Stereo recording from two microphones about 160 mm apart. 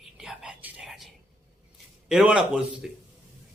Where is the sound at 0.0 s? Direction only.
5° right (ahead or behind).